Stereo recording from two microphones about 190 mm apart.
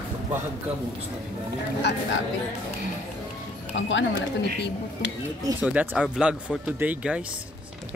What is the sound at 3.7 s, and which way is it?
Speech, 75° left (ahead or behind).